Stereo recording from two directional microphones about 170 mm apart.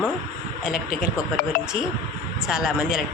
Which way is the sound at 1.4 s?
60° left (ahead or behind).